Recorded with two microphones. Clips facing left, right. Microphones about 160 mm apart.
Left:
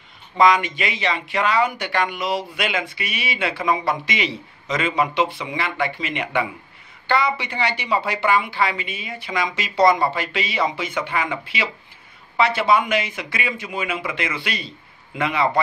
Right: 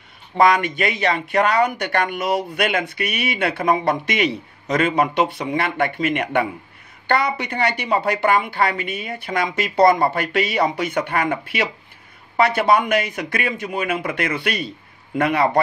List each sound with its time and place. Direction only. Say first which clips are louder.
0.5 s speech: right 1 dB; 55° right (ahead or behind)